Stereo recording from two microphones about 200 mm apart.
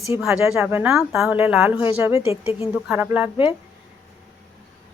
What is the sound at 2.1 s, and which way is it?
Speech, 30° left (ahead or behind).